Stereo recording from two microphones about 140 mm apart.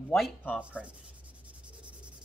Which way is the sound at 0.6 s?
10° right (ahead or behind).